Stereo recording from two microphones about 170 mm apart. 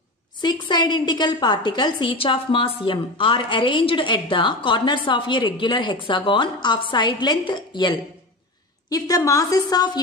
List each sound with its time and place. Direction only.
0.4 s a woman's voice: 25° left (ahead or behind)